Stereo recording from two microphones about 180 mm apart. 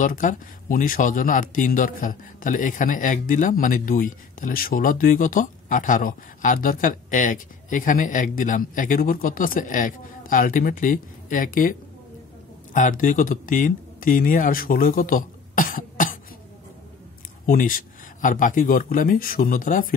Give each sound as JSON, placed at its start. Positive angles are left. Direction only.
{"t": 0.0, "sound": "speech", "side_deg": 50}
{"t": 12.7, "sound": "speech", "side_deg": 45}
{"t": 17.5, "sound": "speech", "side_deg": 50}